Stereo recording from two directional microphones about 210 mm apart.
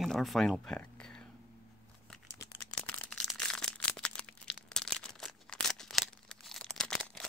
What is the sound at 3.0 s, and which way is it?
Crushing, 5° left (ahead or behind).